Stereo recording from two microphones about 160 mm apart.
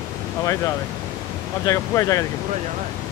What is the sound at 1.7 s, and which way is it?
Speech, 20° left (ahead or behind).